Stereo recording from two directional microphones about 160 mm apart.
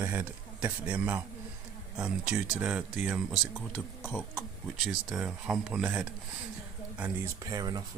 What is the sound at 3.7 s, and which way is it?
Speech, 15° left (ahead or behind).